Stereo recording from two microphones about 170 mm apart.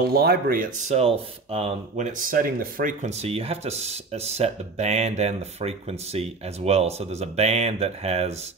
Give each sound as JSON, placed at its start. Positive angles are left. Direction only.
{"t": 0.0, "sound": "speech", "side_deg": -65}